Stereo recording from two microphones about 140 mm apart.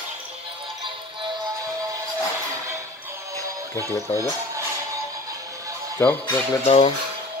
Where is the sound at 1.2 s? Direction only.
30° right (ahead or behind).